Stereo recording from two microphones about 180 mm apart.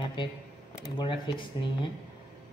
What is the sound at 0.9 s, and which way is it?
Speech, 25° left (ahead or behind).